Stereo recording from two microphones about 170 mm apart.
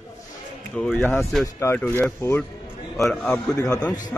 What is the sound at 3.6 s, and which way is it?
Speech, 20° left (ahead or behind).